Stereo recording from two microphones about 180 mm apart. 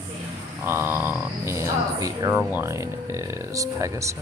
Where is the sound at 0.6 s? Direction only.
15° right (ahead or behind).